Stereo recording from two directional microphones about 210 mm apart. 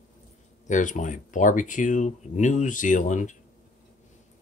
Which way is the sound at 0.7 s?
35° left (ahead or behind).